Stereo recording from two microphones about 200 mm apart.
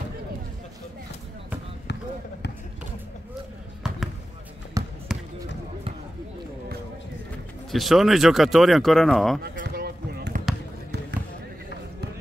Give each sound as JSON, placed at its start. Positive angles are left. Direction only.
{"t": 4.8, "sound": "basketball bounce", "side_deg": -15}
{"t": 7.7, "sound": "speech", "side_deg": 0}
{"t": 9.4, "sound": "basketball bounce", "side_deg": -50}